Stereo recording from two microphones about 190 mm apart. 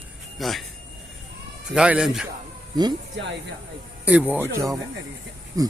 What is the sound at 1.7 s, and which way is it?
Speech, 5° right (ahead or behind).